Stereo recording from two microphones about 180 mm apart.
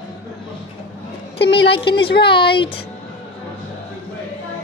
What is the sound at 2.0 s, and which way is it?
Speech, 65° left (ahead or behind).